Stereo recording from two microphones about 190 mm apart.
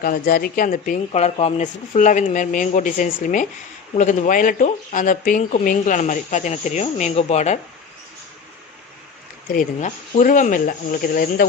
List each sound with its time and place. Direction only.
0.0 s speech: 50° left (ahead or behind)
9.5 s speech: 45° left (ahead or behind)